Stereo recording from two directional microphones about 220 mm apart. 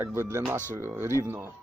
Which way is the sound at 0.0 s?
10° right (ahead or behind).